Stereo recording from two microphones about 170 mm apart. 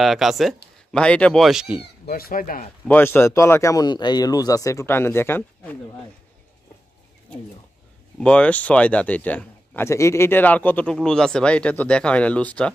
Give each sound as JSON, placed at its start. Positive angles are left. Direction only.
{"t": 0.0, "sound": "speech", "side_deg": 0}
{"t": 2.0, "sound": "speech", "side_deg": 60}
{"t": 2.9, "sound": "speech", "side_deg": 10}
{"t": 8.2, "sound": "speech", "side_deg": 5}